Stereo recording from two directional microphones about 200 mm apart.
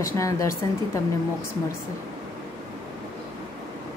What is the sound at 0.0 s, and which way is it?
Speech, 15° left (ahead or behind).